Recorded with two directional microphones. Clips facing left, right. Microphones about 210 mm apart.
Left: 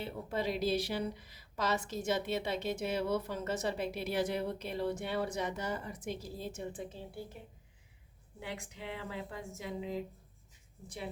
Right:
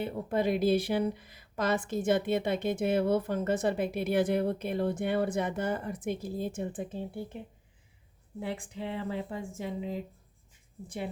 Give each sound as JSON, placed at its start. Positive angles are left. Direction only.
{"t": 0.0, "sound": "speech", "side_deg": -55}
{"t": 8.4, "sound": "speech", "side_deg": -30}